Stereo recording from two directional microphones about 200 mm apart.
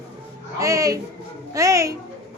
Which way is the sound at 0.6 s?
15° right (ahead or behind).